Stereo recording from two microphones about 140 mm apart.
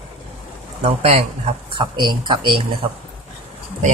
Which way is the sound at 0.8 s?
50° right (ahead or behind).